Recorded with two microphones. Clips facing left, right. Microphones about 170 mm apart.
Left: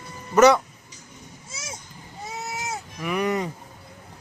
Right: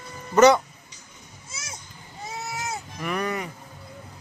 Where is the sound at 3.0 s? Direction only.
10° left (ahead or behind).